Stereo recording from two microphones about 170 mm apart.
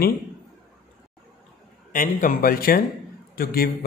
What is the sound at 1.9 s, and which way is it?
A man's voice, 55° left (ahead or behind).